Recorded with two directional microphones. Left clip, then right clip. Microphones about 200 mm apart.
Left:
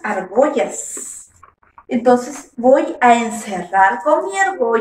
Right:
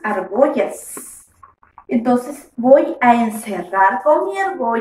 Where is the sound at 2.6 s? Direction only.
5° right (ahead or behind).